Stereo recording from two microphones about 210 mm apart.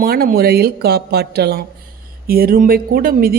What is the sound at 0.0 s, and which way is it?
A man's voice, 45° right (ahead or behind).